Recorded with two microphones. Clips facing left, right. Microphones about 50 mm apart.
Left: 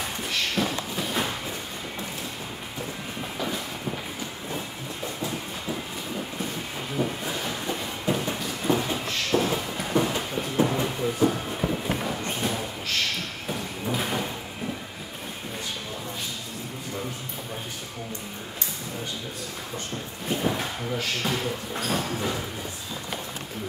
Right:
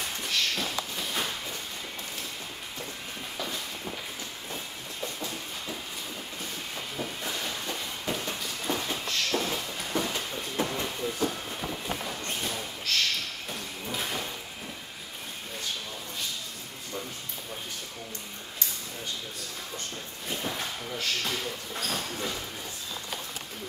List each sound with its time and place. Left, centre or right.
0.0 s a sound: centre
3.3 s vehicle: centre
4.5 s train: centre
7.0 s a sound: centre
13.9 s sliding door: centre
20.2 s drawer open or close: centre